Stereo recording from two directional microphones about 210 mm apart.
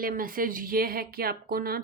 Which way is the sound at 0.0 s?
40° right (ahead or behind).